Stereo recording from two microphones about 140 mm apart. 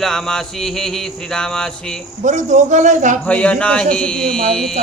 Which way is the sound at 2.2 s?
60° right (ahead or behind).